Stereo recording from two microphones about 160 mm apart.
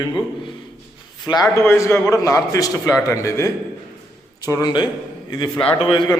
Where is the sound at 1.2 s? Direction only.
20° left (ahead or behind).